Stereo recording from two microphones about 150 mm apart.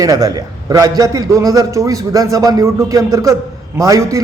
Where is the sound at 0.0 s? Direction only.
25° right (ahead or behind).